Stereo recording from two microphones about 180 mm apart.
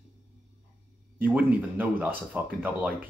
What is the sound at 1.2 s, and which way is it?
Speech, 5° right (ahead or behind).